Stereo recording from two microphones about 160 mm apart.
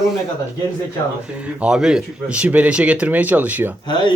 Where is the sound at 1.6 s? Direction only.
5° right (ahead or behind).